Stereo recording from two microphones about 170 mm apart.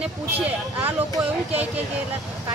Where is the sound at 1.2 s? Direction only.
10° right (ahead or behind).